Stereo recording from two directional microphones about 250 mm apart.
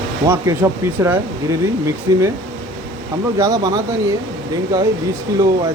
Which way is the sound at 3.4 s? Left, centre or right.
Centre.